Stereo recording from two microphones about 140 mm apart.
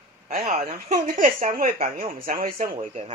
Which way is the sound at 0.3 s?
80° right.